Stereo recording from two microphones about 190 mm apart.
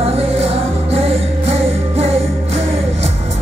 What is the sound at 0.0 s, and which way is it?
Music, 30° right (ahead or behind).